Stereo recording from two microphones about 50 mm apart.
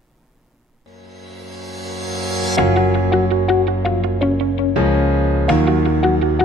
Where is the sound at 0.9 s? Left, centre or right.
Centre.